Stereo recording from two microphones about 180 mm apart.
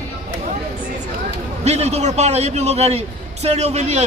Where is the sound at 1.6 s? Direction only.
35° right (ahead or behind).